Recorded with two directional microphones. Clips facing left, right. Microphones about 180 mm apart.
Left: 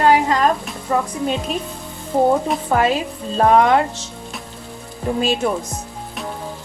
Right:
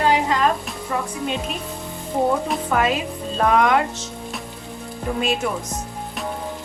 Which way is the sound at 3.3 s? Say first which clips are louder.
Left 4 dB; 35° left (ahead or behind).